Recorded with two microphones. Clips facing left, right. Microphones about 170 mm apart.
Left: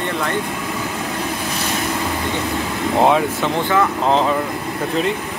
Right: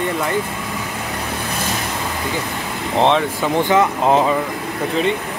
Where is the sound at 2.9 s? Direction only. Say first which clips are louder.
Even; 5° left (ahead or behind).